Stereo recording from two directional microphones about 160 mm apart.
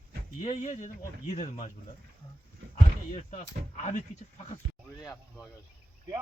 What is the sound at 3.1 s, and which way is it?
Speech, 40° left (ahead or behind).